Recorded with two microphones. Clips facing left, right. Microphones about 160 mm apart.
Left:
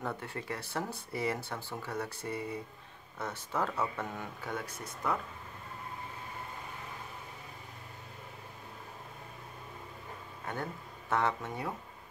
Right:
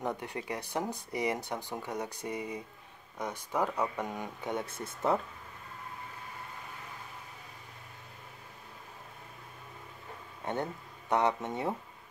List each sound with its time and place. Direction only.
0.0 s speech: 15° right (ahead or behind)
10.4 s speech: 25° right (ahead or behind)